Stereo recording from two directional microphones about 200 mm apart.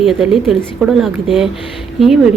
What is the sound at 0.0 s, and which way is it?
Speech, centre (ahead or behind).